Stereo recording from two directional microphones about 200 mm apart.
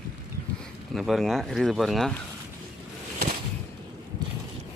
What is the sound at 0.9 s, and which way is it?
Speech, centre (ahead or behind).